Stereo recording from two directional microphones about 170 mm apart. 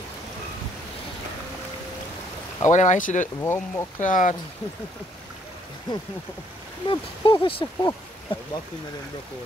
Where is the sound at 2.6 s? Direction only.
45° left (ahead or behind).